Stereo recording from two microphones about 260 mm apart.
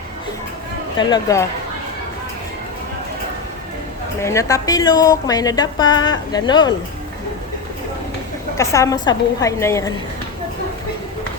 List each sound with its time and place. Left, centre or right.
0.9 s a woman's voice: centre
4.2 s a woman's voice: centre
8.5 s a woman's voice: centre